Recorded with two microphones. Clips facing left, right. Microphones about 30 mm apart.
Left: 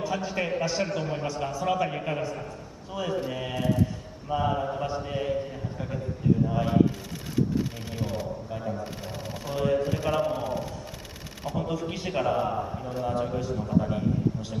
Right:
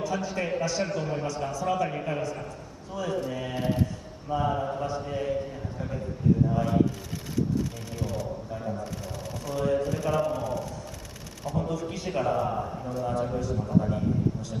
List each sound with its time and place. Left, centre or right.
0.0 s a man's voice: centre
2.1 s a man's voice: centre
2.9 s speech: left
3.5 s speech: right
3.8 s a man's voice: centre
8.5 s a man's voice: centre
8.8 s a man's voice: left